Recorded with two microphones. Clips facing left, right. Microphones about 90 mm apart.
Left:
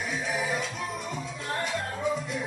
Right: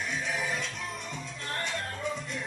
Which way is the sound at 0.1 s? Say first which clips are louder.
Left 4 dB; 5° left (ahead or behind).